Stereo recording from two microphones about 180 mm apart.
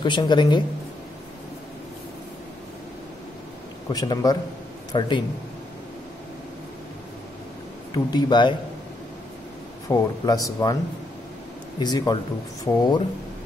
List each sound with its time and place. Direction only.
0.0 s speech: 25° left (ahead or behind)
3.9 s speech: 20° left (ahead or behind)
7.9 s speech: 25° left (ahead or behind)
9.8 s speech: 20° left (ahead or behind)
11.8 s speech: 20° left (ahead or behind)